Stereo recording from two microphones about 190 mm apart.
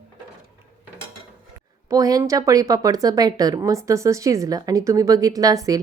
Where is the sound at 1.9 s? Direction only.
20° right (ahead or behind).